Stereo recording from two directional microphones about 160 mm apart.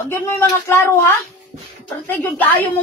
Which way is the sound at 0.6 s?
15° left (ahead or behind).